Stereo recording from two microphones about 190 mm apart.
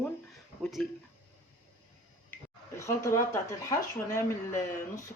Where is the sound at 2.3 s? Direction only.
15° left (ahead or behind).